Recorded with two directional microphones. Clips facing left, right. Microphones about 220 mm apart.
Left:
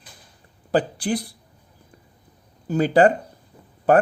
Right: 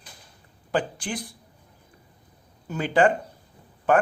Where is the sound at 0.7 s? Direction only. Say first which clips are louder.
Left 6 dB; 35° left (ahead or behind).